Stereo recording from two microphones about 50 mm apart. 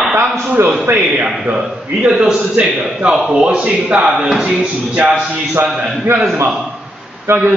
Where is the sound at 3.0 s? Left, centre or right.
Centre.